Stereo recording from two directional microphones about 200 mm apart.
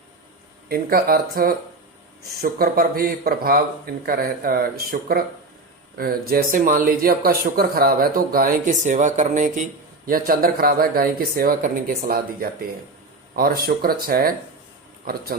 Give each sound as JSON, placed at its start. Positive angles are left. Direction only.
{"t": 0.7, "sound": "speech", "side_deg": -50}